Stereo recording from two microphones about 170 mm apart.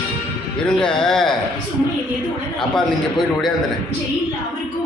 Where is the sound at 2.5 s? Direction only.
Centre (ahead or behind).